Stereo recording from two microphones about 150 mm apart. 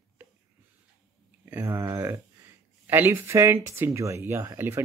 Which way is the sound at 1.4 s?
15° right (ahead or behind).